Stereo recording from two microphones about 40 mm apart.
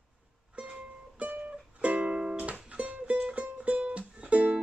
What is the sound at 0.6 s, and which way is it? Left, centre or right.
Music, right.